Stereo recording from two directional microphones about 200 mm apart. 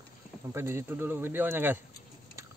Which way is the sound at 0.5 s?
15° right (ahead or behind).